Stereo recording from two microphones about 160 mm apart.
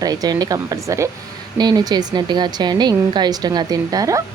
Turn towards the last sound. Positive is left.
turn(degrees=-20)  # may be behind; listen again after turning